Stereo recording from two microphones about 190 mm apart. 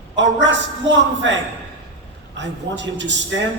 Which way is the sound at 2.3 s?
70° right (ahead or behind).